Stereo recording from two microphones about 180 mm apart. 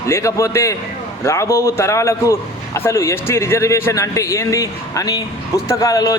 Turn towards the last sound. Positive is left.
turn(degrees=20)  # may be behind; listen again after turning